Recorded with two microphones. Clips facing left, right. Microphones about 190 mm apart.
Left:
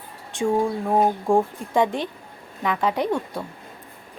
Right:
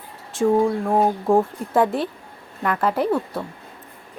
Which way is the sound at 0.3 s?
Centre (ahead or behind).